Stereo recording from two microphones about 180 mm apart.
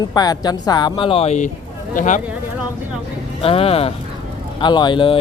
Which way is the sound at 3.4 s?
30° left (ahead or behind).